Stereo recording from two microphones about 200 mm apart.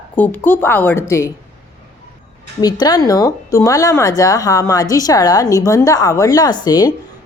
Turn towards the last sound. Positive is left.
turn(degrees=20)  # may be behind; listen again after turning